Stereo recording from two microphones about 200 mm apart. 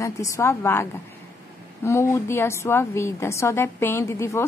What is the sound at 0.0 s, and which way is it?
Speech, 15° left (ahead or behind).